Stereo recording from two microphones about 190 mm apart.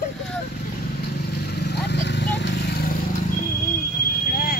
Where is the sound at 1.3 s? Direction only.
55° left (ahead or behind).